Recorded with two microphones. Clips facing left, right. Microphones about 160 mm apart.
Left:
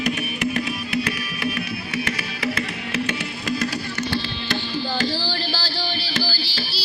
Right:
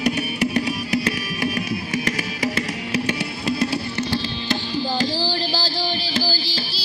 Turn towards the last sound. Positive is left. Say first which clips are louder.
# right 3 dB
turn(degrees=-40)  # may be behind; listen again after turning